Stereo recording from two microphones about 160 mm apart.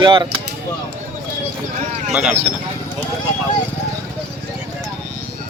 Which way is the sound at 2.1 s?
5° right (ahead or behind).